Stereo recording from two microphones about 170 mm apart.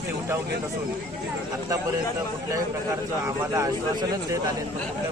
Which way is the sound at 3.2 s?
20° right (ahead or behind).